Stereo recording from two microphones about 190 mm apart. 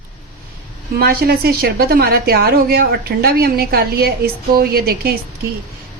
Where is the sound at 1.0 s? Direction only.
55° right (ahead or behind).